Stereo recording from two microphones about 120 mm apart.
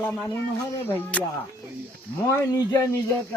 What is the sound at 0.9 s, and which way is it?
Speech, 15° left (ahead or behind).